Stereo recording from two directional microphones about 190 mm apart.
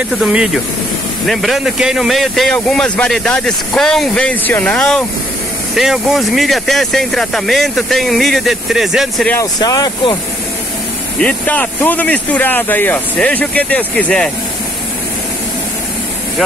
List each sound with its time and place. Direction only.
0.1 s speech: 5° right (ahead or behind)
9.3 s speech: 20° left (ahead or behind)
11.1 s speech: 5° left (ahead or behind)